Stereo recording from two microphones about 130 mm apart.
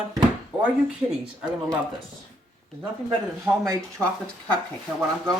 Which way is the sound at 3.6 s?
20° right (ahead or behind).